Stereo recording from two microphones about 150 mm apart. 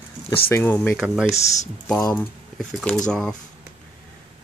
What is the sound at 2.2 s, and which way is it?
Speech, 5° left (ahead or behind).